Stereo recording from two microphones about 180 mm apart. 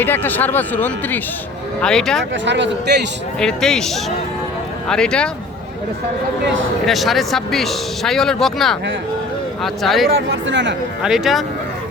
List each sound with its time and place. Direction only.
0.0 s speech: 10° left (ahead or behind)
2.3 s speech: 85° right
3.4 s speech: 5° left (ahead or behind)
6.8 s speech: centre (ahead or behind)
9.8 s speech: centre (ahead or behind)
10.2 s speech: 85° right
11.0 s speech: centre (ahead or behind)